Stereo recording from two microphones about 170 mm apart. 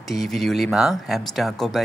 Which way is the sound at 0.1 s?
Centre (ahead or behind).